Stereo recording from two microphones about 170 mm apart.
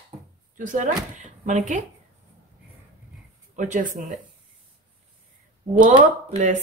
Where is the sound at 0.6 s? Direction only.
50° right (ahead or behind).